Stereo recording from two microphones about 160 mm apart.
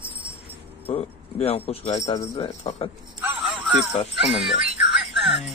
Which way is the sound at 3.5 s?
10° right (ahead or behind).